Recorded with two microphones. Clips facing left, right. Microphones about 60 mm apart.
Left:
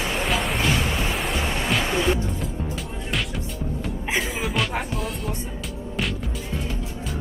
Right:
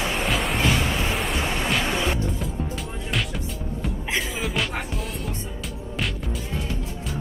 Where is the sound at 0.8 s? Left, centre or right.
Centre.